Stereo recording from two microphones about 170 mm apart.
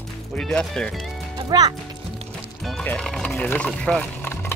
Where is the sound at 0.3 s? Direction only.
5° left (ahead or behind).